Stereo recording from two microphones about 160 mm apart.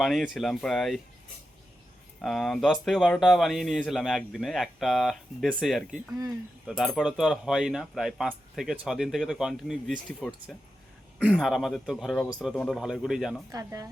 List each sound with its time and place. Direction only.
0.0 s speech: centre (ahead or behind)
2.2 s speech: centre (ahead or behind)
13.5 s speech: 25° right (ahead or behind)